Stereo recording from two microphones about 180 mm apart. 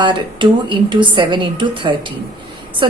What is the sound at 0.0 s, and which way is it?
A woman's voice, 25° right (ahead or behind).